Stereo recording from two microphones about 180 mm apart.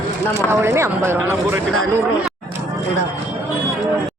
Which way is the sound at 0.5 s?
15° right (ahead or behind).